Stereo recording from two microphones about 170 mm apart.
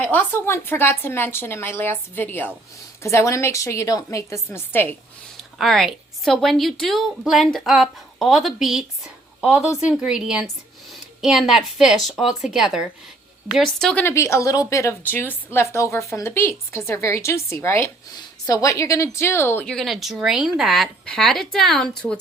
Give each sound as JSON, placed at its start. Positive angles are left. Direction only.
{"t": 0.0, "sound": "a woman's voice", "side_deg": 10}
{"t": 5.4, "sound": "a woman's voice", "side_deg": 0}
{"t": 14.0, "sound": "a woman's voice", "side_deg": 15}
{"t": 19.6, "sound": "a woman's voice", "side_deg": 0}